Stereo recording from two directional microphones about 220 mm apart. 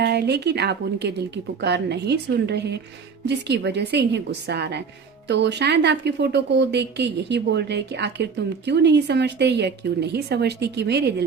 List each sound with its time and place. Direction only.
0.0 s speech: 45° right (ahead or behind)